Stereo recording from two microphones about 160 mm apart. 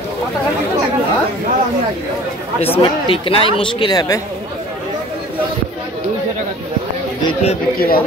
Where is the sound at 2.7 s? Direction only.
35° left (ahead or behind).